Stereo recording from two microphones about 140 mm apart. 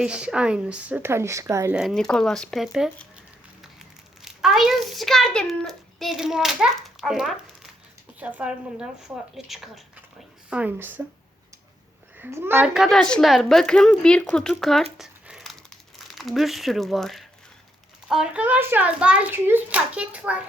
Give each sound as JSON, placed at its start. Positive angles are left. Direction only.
{"t": 0.0, "sound": "a child's voice", "side_deg": -5}
{"t": 1.7, "sound": "a woman's voice", "side_deg": 0}
{"t": 4.2, "sound": "a child's voice", "side_deg": -5}
{"t": 10.5, "sound": "a child's voice", "side_deg": -10}
{"t": 12.2, "sound": "a child's voice", "side_deg": -15}
{"t": 12.7, "sound": "a woman's voice", "side_deg": 0}
{"t": 14.9, "sound": "crumpling", "side_deg": -5}
{"t": 16.0, "sound": "a child's voice", "side_deg": 0}